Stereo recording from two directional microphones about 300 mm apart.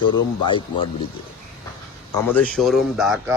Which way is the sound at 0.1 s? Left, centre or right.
Centre.